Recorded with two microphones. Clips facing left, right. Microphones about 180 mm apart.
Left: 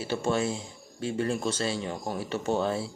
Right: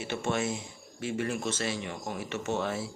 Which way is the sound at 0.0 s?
35° left (ahead or behind).